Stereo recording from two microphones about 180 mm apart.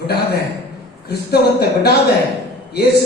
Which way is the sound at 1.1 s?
60° left (ahead or behind).